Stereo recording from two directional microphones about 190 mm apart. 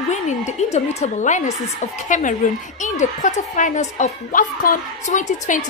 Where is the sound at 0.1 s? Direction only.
35° left (ahead or behind).